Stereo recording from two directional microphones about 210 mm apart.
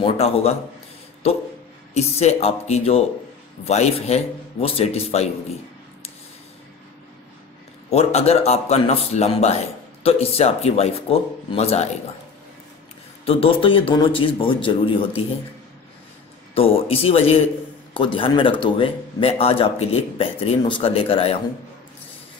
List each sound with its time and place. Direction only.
0.0 s speech: 30° left (ahead or behind)
7.9 s speech: 30° left (ahead or behind)
13.2 s speech: 25° left (ahead or behind)
16.5 s speech: 25° left (ahead or behind)